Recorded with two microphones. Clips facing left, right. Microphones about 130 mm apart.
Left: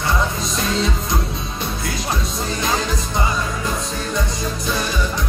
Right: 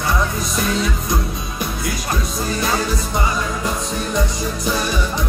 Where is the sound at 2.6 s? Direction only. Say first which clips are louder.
Right 1 dB; 20° left (ahead or behind).